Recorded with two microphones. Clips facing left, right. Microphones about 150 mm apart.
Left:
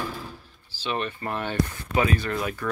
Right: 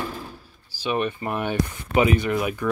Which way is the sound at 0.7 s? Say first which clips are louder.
Right 5 dB; 10° right (ahead or behind).